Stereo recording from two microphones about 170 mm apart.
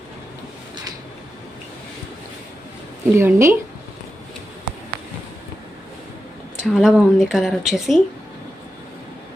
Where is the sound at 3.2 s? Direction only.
15° right (ahead or behind).